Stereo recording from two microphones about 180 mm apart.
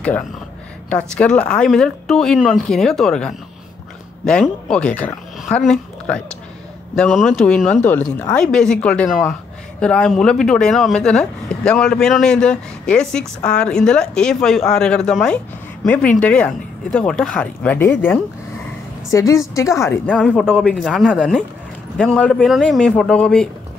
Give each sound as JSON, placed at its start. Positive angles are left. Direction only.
{"t": 0.8, "sound": "a woman's voice", "side_deg": 5}
{"t": 20.1, "sound": "speech", "side_deg": 0}